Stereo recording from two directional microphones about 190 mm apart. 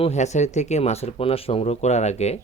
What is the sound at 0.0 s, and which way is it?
Speech, 35° left (ahead or behind).